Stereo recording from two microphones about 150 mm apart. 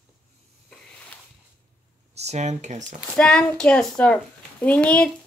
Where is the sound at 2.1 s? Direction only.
50° right (ahead or behind).